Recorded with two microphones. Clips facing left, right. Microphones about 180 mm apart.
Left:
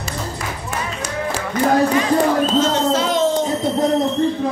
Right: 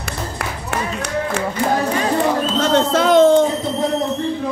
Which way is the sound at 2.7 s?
55° right (ahead or behind).